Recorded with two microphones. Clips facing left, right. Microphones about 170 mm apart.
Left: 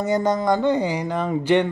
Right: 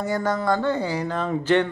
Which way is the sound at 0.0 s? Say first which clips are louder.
Left 3 dB; 20° left (ahead or behind).